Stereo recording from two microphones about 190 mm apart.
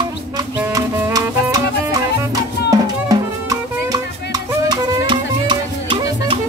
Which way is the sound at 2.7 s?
20° right (ahead or behind).